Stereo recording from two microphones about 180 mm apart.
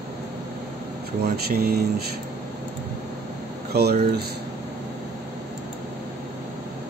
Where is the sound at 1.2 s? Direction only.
60° right (ahead or behind).